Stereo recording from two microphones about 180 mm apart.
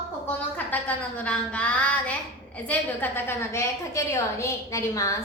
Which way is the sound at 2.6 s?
10° left (ahead or behind).